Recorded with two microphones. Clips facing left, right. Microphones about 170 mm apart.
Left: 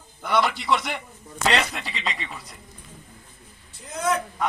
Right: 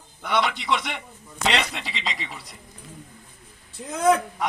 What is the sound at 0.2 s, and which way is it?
A man's voice, centre (ahead or behind).